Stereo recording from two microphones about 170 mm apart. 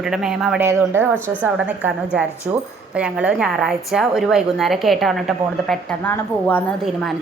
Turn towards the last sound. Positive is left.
turn(degrees=10)  # may be behind; listen again after turning